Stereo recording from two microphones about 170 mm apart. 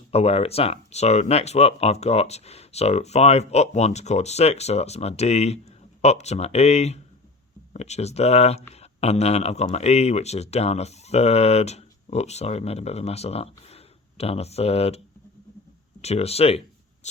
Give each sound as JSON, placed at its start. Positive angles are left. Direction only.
{"t": 0.1, "sound": "speech", "side_deg": 35}